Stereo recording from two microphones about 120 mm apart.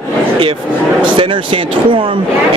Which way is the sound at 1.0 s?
40° right (ahead or behind).